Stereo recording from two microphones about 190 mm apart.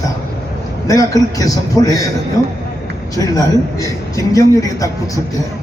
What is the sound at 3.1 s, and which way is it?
Speech, 20° left (ahead or behind).